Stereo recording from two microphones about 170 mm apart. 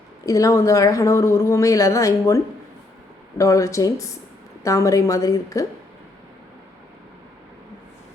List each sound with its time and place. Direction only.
0.3 s a woman's voice: 20° left (ahead or behind)